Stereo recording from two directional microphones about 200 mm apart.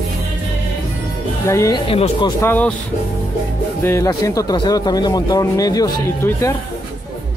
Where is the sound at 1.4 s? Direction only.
15° left (ahead or behind).